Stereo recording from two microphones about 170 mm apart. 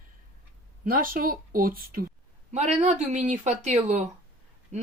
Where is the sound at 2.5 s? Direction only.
40° right (ahead or behind).